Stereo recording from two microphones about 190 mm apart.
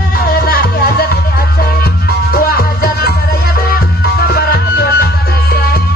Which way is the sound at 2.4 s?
55° left (ahead or behind).